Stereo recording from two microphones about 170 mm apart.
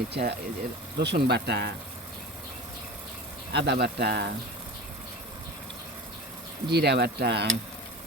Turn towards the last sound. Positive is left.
turn(degrees=-75)  # may be behind; listen again after turning